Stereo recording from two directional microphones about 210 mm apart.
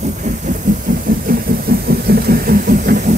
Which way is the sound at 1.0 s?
45° right (ahead or behind).